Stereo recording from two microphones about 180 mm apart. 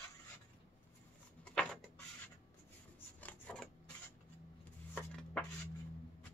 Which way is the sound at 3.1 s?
10° left (ahead or behind).